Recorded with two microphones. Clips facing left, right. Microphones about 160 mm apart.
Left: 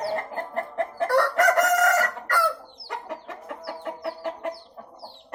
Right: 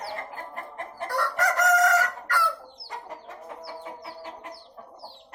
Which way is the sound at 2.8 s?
75° left (ahead or behind).